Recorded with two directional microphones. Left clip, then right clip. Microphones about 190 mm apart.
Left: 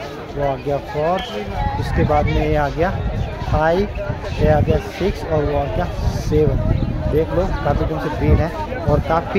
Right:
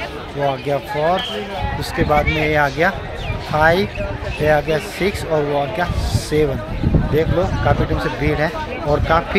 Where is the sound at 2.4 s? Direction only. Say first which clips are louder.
Right 3 dB; centre (ahead or behind).